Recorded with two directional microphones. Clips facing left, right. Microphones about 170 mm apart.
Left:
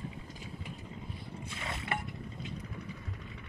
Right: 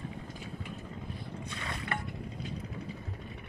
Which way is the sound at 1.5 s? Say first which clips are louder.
Left 1 dB; 25° left (ahead or behind).